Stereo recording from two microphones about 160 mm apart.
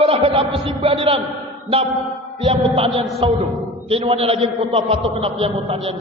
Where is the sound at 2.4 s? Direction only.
40° right (ahead or behind).